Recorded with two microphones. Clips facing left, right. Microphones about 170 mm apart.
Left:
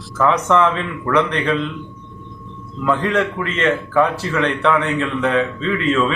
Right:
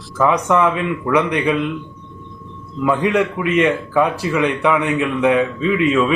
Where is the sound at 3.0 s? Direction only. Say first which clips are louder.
Right 2 dB; 15° right (ahead or behind).